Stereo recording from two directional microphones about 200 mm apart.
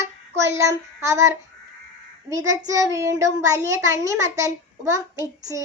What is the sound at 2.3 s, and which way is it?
Child singing, 15° right (ahead or behind).